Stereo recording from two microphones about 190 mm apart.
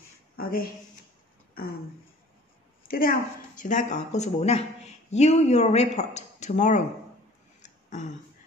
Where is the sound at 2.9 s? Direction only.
50° left (ahead or behind).